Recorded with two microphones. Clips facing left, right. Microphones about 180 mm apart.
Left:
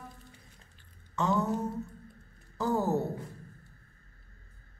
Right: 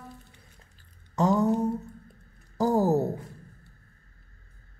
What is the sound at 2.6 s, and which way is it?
Music, 35° right (ahead or behind).